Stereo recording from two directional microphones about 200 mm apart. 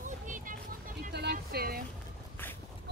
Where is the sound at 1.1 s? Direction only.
55° right (ahead or behind).